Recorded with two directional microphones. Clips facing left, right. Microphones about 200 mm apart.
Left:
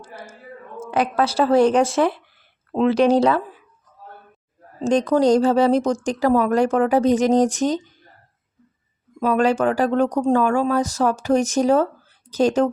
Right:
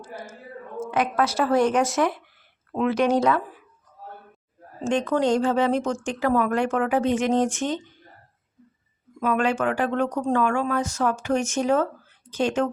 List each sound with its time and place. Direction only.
0.9 s speech: 35° left (ahead or behind)
4.8 s speech: 35° left (ahead or behind)
9.2 s speech: 35° left (ahead or behind)